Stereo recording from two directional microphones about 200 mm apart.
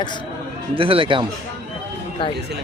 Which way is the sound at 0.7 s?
25° right (ahead or behind).